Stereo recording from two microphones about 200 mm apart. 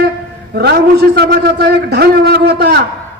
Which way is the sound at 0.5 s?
55° right (ahead or behind).